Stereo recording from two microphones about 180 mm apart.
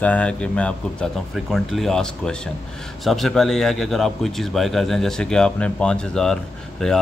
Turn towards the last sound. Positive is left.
turn(degrees=5)  # may be behind; listen again after turning